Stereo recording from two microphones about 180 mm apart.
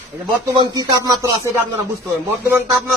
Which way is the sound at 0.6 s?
20° right (ahead or behind).